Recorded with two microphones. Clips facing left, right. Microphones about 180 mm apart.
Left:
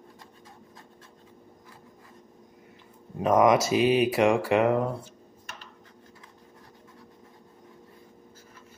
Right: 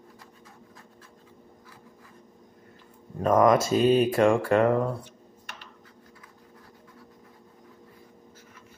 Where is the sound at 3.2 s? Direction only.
5° left (ahead or behind).